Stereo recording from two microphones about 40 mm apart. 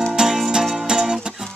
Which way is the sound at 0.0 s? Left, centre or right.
Centre.